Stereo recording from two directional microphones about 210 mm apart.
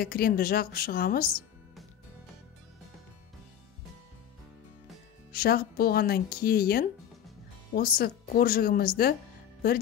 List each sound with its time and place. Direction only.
0.0 s speech: 45° left (ahead or behind)
5.3 s speech: 45° left (ahead or behind)